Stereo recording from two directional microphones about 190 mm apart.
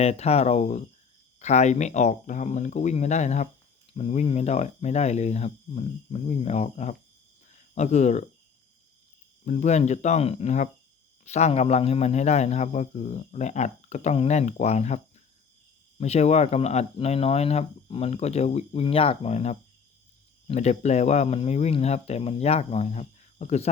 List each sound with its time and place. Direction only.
0.0 s speech: 35° left (ahead or behind)
9.5 s speech: 35° left (ahead or behind)